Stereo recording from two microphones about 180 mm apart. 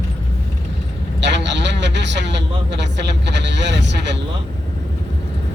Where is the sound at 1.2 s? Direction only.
75° right (ahead or behind).